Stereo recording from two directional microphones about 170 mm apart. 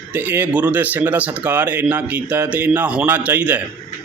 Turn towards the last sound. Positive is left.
turn(degrees=-10)  # may be behind; listen again after turning